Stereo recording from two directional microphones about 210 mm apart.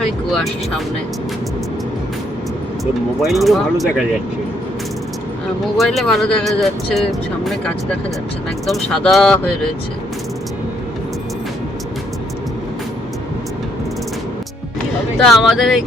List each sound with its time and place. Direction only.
0.3 s speech: centre (ahead or behind)
3.2 s speech: centre (ahead or behind)
5.7 s speech: centre (ahead or behind)
15.2 s speech: centre (ahead or behind)